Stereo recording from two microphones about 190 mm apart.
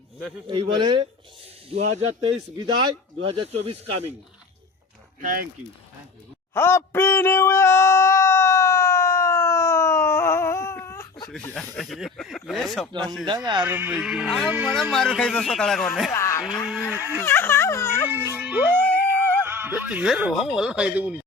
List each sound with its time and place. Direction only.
0.4 s speech: 25° right (ahead or behind)
5.2 s speech: 45° right (ahead or behind)
6.5 s a sound: 15° left (ahead or behind)
11.5 s speech: centre (ahead or behind)
13.2 s speech: 25° right (ahead or behind)
13.6 s speech: 10° right (ahead or behind)
14.8 s a man's voice: centre (ahead or behind)
16.1 s a sound: 15° left (ahead or behind)
16.9 s speech: 10° right (ahead or behind)
17.2 s speech: 10° left (ahead or behind)
18.1 s speech: 10° right (ahead or behind)